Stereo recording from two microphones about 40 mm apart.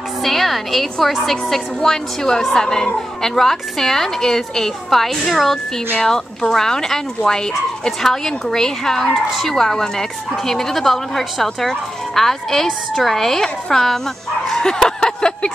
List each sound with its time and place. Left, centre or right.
0.2 s a woman's voice: centre
6.0 s speech: centre
14.5 s a sound: centre